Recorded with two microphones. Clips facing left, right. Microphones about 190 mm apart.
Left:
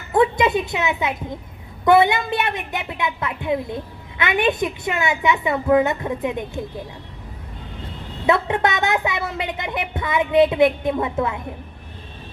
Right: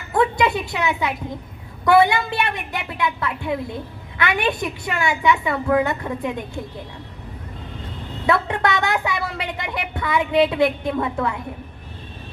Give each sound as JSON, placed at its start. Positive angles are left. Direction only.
{"t": 0.1, "sound": "music", "side_deg": 20}
{"t": 1.8, "sound": "speech", "side_deg": 20}
{"t": 8.3, "sound": "speech", "side_deg": 20}